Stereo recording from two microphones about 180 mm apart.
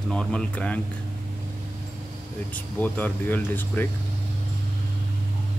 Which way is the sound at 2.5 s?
10° left (ahead or behind).